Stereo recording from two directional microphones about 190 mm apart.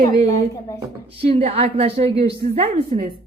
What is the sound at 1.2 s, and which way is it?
A woman's voice, 30° right (ahead or behind).